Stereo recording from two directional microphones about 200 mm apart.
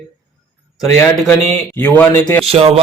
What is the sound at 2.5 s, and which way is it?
Speech, 30° right (ahead or behind).